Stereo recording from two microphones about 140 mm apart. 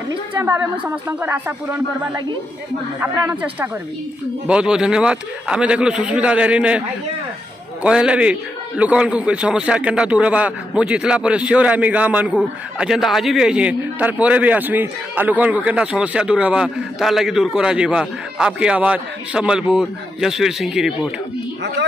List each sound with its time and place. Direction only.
0.4 s a man's voice: 15° right (ahead or behind)
3.0 s a man's voice: 15° right (ahead or behind)
7.8 s a man's voice: 5° right (ahead or behind)